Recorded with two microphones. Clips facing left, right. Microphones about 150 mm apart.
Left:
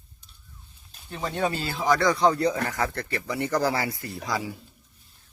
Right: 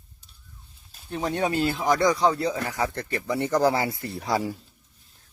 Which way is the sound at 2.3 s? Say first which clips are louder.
Left 2 dB; 5° right (ahead or behind).